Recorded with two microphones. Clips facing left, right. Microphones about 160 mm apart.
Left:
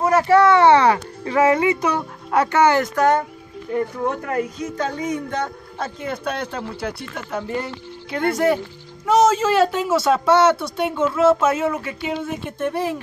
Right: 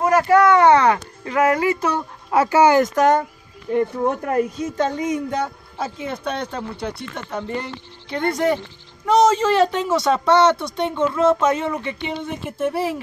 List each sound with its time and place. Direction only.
0.1 s speech: 30° left (ahead or behind); by 2.0 s 15° left (ahead or behind)
2.3 s speech: 5° right (ahead or behind)
3.9 s speech: 25° right (ahead or behind); by 12.9 s 5° right (ahead or behind)